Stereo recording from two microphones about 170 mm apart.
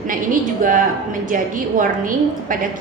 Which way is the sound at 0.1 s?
55° right (ahead or behind).